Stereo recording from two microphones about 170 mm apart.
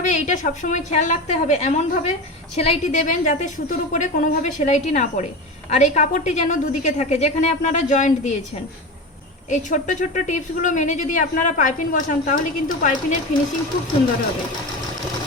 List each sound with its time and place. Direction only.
0.0 s speech: 45° left (ahead or behind)
9.5 s speech: 45° left (ahead or behind)